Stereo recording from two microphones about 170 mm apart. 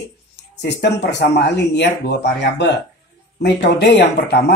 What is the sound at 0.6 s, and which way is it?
Speech, 80° left.